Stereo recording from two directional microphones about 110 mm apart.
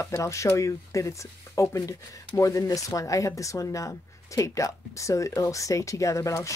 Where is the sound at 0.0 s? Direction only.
30° left (ahead or behind).